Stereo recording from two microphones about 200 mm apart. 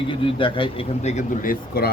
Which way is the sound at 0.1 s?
25° left (ahead or behind).